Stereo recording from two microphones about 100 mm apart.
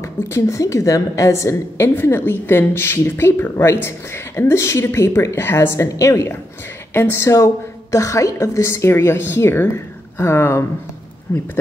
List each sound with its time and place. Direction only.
0.0 s a woman's voice: 30° left (ahead or behind)